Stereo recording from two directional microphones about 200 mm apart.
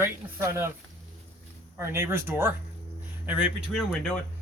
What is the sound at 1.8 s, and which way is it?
Speech, 15° right (ahead or behind).